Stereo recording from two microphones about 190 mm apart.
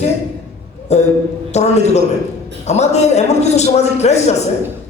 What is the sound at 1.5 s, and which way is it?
A man's voice, 35° left (ahead or behind).